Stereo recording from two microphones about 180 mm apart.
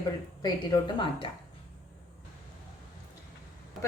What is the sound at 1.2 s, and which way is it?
Speech, 30° left (ahead or behind).